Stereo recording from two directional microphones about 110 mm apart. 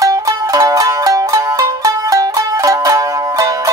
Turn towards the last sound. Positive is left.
turn(degrees=-30)  # may be behind; listen again after turning